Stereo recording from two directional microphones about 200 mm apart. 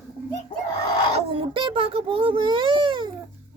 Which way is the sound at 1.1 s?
25° right (ahead or behind).